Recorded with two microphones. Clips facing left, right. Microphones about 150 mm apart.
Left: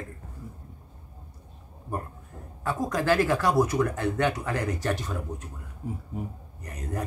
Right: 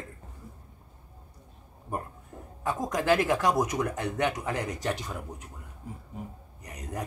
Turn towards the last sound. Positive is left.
turn(degrees=-15)  # may be behind; listen again after turning